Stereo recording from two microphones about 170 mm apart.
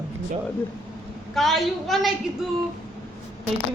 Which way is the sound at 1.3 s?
Centre (ahead or behind).